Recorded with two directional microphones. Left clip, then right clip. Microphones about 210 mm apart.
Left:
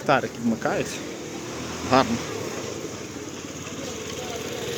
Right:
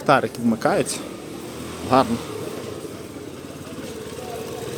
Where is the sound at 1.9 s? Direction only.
15° right (ahead or behind).